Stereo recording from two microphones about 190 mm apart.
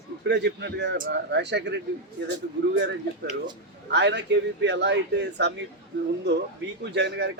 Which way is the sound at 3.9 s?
65° right (ahead or behind).